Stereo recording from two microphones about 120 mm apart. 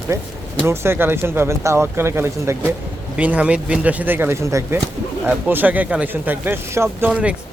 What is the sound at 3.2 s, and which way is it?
Speech, 10° right (ahead or behind).